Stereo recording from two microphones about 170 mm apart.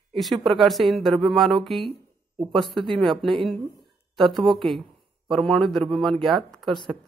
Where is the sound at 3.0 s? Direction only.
Centre (ahead or behind).